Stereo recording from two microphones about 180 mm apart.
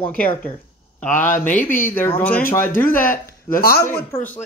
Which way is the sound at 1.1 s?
45° left (ahead or behind).